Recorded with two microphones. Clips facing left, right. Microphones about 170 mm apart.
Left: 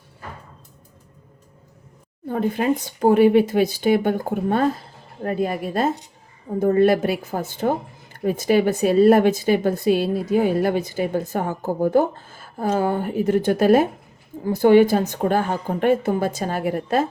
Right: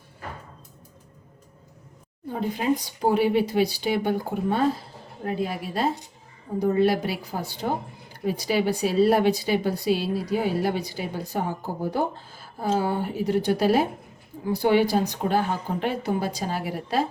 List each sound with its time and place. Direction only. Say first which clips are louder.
2.3 s speech: left 4 dB; 55° left (ahead or behind)